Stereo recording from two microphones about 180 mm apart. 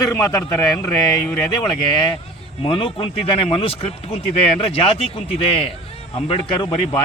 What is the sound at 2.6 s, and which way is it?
Speech, 30° left (ahead or behind).